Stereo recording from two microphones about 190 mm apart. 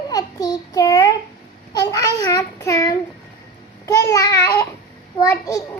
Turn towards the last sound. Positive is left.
turn(degrees=20)  # may be behind; listen again after turning